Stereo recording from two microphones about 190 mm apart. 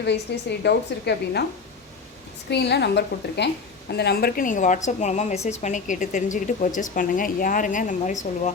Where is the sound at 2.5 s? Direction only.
60° left (ahead or behind).